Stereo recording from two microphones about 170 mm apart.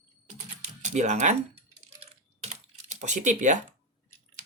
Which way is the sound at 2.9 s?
45° right (ahead or behind).